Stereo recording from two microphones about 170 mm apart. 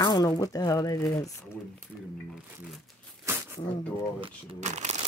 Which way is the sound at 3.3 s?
15° right (ahead or behind).